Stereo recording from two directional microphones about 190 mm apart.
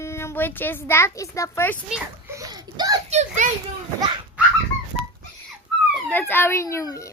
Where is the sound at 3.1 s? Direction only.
35° right (ahead or behind).